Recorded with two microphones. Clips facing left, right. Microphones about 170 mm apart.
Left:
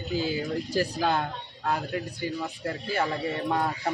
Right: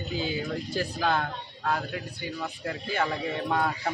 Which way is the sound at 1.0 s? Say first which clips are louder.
Right 2 dB; 15° left (ahead or behind).